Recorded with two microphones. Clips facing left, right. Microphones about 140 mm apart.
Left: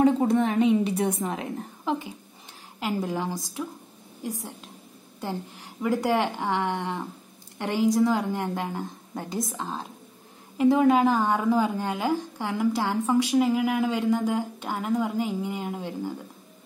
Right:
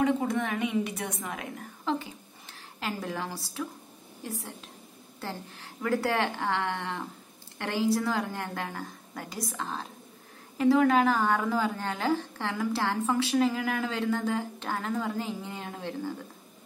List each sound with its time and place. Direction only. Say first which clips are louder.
0.0 s a woman's voice: left 6 dB; 30° left (ahead or behind)
2.8 s a woman's voice: left 6 dB; 15° left (ahead or behind)